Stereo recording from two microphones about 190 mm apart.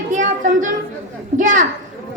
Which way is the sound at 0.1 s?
40° right (ahead or behind).